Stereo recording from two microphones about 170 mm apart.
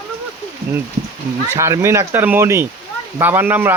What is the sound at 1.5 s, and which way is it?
Speech, 15° right (ahead or behind).